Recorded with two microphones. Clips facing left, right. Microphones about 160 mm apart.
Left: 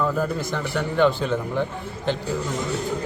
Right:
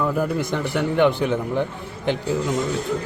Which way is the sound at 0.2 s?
15° right (ahead or behind).